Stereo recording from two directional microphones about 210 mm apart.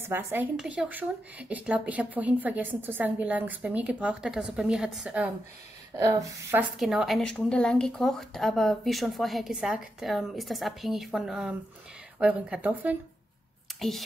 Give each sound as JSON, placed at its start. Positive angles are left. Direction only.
{"t": 0.0, "sound": "a woman's voice", "side_deg": -10}
{"t": 5.9, "sound": "a woman's voice", "side_deg": -15}
{"t": 6.8, "sound": "a woman's voice", "side_deg": 0}